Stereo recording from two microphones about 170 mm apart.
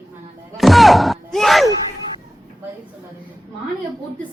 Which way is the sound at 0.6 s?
Centre (ahead or behind).